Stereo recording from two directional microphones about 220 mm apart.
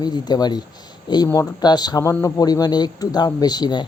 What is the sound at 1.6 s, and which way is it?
Speech, 20° left (ahead or behind).